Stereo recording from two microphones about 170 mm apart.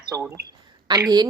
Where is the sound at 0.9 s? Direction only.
25° right (ahead or behind).